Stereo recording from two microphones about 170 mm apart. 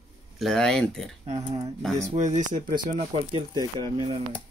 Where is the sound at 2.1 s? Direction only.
45° right (ahead or behind).